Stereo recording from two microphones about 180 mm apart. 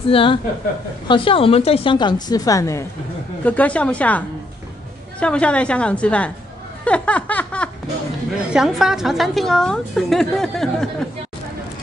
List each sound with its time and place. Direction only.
0.1 s a woman's voice: 30° left (ahead or behind); by 4.2 s 5° left (ahead or behind)
5.2 s a woman's voice: 5° left (ahead or behind)
6.8 s laughter: 5° left (ahead or behind)
8.4 s a woman's voice: 5° right (ahead or behind)